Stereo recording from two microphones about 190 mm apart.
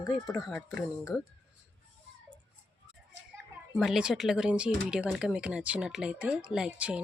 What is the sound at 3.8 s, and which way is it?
Speech, 5° right (ahead or behind).